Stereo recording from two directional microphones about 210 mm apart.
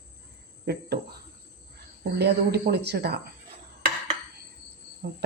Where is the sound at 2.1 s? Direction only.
50° right (ahead or behind).